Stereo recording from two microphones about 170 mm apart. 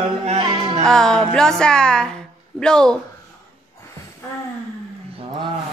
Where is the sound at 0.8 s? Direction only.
5° left (ahead or behind).